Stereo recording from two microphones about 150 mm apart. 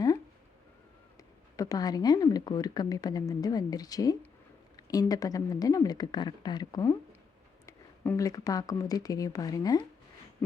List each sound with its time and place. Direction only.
1.5 s speech: 25° left (ahead or behind)